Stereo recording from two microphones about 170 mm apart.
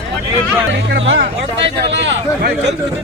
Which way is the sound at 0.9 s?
85° right.